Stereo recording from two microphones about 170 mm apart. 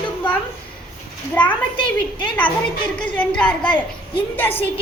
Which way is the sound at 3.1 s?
10° left (ahead or behind).